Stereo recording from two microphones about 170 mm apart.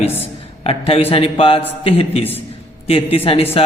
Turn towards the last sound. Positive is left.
turn(degrees=35)  # may be behind; listen again after turning